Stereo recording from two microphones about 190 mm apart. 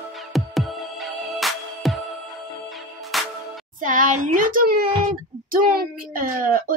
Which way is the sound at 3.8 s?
45° right (ahead or behind).